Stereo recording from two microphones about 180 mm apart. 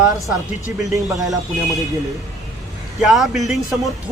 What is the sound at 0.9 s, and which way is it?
Speech, 20° right (ahead or behind).